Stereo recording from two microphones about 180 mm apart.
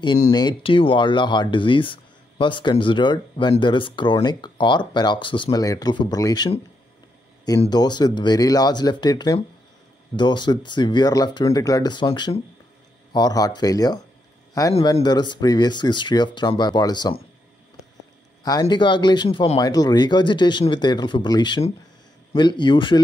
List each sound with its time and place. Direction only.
0.3 s speech: 25° left (ahead or behind)
7.7 s speech: 20° left (ahead or behind)
18.4 s speech: 20° left (ahead or behind)